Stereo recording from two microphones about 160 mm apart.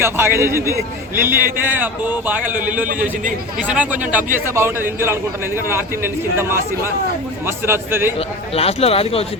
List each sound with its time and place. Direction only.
0.0 s a man's voice: 15° right (ahead or behind)
2.8 s a man's voice: 55° right (ahead or behind)
3.7 s a man's voice: 10° right (ahead or behind)
7.4 s a man's voice: 15° right (ahead or behind)
8.5 s speech: 40° left (ahead or behind)